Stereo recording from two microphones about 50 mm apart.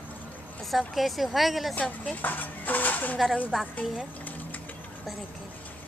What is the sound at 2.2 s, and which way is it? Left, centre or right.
Speech, left.